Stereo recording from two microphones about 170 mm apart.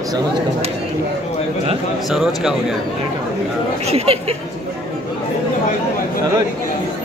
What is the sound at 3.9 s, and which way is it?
Speech, 35° right (ahead or behind).